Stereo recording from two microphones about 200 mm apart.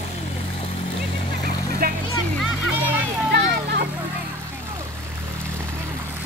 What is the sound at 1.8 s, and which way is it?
Vehicle, 50° right (ahead or behind).